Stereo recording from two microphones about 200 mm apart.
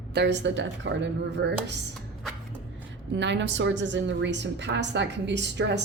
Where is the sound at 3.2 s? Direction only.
60° right (ahead or behind).